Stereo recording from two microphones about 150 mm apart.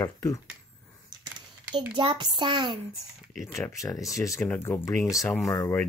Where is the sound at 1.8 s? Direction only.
30° right (ahead or behind).